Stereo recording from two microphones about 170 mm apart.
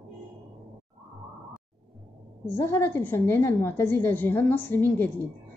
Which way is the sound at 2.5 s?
10° left (ahead or behind).